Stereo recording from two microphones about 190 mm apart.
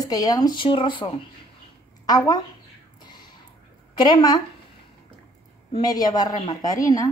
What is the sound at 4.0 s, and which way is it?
Speech, 20° left (ahead or behind).